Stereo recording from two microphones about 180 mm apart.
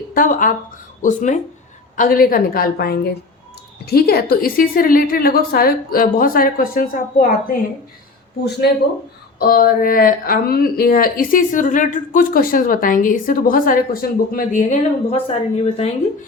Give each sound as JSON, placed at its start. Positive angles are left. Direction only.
{"t": 0.1, "sound": "a woman's voice", "side_deg": 50}
{"t": 9.4, "sound": "speech", "side_deg": 55}